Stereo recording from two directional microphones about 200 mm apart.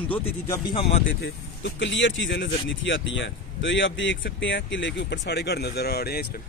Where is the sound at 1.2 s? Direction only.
60° left (ahead or behind).